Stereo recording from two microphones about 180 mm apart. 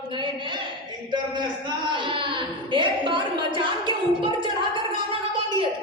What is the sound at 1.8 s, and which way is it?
A woman's voice, 25° right (ahead or behind).